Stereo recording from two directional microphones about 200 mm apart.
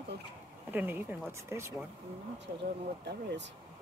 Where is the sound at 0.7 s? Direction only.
10° right (ahead or behind).